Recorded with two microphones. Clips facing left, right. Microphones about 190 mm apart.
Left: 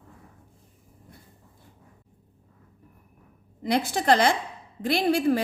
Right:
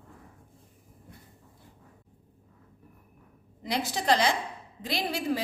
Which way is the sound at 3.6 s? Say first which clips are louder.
Left 6 dB; 55° left (ahead or behind).